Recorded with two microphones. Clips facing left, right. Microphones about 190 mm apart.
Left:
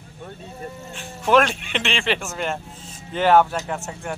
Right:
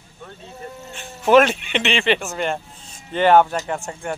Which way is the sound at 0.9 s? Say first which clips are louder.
Right 4 dB; centre (ahead or behind).